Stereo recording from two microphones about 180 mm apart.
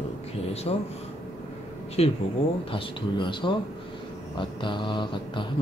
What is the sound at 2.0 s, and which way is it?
Speech, 35° left (ahead or behind).